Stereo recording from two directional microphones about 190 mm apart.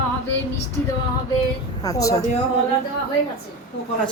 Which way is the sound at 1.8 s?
20° left (ahead or behind).